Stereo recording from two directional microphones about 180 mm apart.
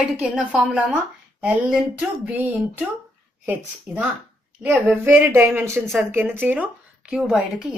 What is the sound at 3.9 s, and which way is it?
Speech, 5° right (ahead or behind).